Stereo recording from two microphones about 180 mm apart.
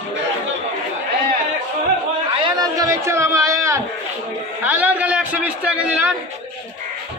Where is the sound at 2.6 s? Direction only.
20° right (ahead or behind).